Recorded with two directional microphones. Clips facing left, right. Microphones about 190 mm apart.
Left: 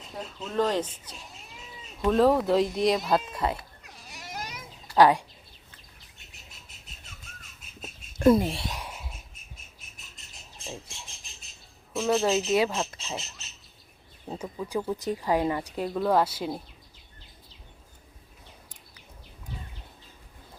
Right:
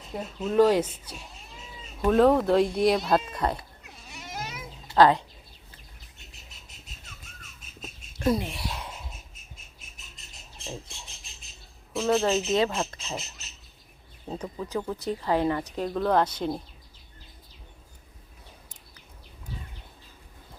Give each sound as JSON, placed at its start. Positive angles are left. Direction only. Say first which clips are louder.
{"t": 0.3, "sound": "speech", "louder": "right 6 dB", "side_deg": -10}
{"t": 3.8, "sound": "a sound", "louder": "right 1 dB", "side_deg": 0}
{"t": 4.9, "sound": "speech", "louder": "even", "side_deg": 10}
{"t": 8.2, "sound": "speech", "louder": "left 6 dB", "side_deg": 55}
{"t": 8.4, "sound": "speech", "louder": "left 4 dB", "side_deg": 30}
{"t": 8.7, "sound": "a sound", "louder": "right 1 dB", "side_deg": 10}
{"t": 11.9, "sound": "speech", "louder": "even", "side_deg": 0}
{"t": 14.3, "sound": "speech", "louder": "right 1 dB", "side_deg": 5}